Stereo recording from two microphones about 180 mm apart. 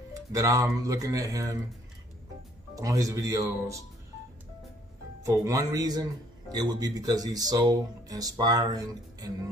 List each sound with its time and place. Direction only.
0.1 s speech: 20° right (ahead or behind)
2.7 s speech: 20° right (ahead or behind)
5.2 s speech: 20° right (ahead or behind)